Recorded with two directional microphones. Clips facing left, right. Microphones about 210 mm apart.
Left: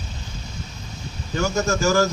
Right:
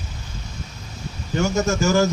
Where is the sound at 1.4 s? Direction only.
25° right (ahead or behind).